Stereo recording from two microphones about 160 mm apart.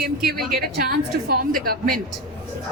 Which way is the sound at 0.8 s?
70° right (ahead or behind).